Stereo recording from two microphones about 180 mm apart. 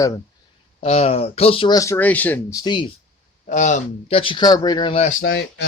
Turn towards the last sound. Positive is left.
turn(degrees=65)  # may be behind; listen again after turning